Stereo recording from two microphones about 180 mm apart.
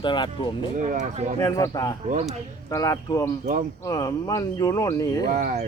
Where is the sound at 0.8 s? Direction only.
45° right (ahead or behind).